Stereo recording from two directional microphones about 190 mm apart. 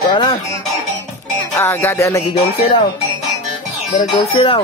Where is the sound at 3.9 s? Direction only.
30° left (ahead or behind).